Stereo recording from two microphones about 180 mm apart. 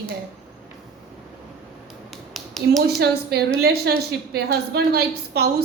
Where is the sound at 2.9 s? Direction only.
65° right (ahead or behind).